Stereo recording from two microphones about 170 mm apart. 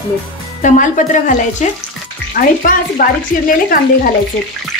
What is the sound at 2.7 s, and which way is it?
Speech, 55° left (ahead or behind).